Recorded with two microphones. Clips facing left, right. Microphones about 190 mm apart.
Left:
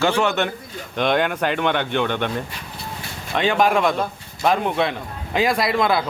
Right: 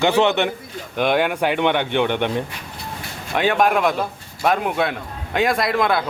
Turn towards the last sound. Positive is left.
turn(degrees=0)  # may be behind; listen again after turning